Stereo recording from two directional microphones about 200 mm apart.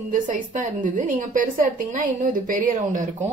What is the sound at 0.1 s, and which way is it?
A woman's voice, 40° right (ahead or behind).